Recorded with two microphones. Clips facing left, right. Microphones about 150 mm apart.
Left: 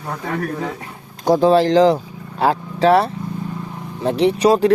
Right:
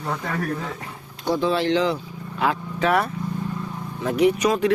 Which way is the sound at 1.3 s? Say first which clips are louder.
Left 8 dB; 40° left (ahead or behind).